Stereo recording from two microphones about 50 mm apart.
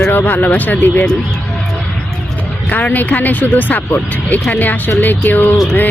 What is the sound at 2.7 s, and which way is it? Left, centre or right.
Speech, left.